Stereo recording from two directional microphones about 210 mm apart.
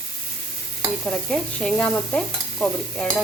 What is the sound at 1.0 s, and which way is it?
Sizzle, 5° left (ahead or behind).